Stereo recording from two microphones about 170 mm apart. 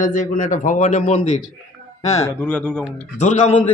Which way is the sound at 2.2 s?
10° left (ahead or behind).